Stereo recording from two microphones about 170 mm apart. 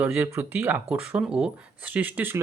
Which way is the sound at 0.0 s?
15° right (ahead or behind).